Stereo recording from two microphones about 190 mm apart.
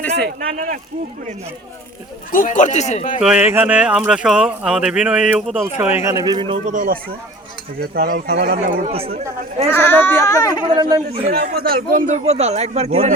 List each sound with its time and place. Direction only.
0.3 s speech: 40° right (ahead or behind)
2.3 s speech: 45° left (ahead or behind)
3.2 s speech: 5° right (ahead or behind); by 6.6 s 25° right (ahead or behind)
6.7 s speech: 45° right (ahead or behind)
9.7 s speech: 10° left (ahead or behind)
10.8 s speech: 20° right (ahead or behind)
11.3 s speech: 55° right (ahead or behind); by 13.1 s 35° right (ahead or behind)